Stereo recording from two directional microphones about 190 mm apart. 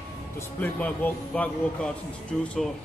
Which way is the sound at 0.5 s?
5° left (ahead or behind).